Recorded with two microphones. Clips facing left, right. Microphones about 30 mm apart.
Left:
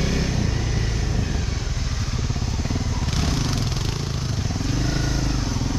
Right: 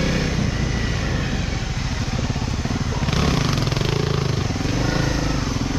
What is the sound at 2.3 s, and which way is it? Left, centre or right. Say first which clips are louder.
Motorcycle: right 3 dB; right.